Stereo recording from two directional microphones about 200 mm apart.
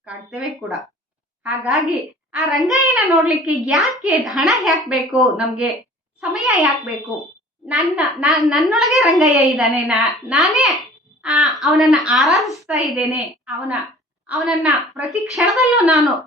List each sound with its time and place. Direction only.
0.0 s a child's voice: 5° right (ahead or behind)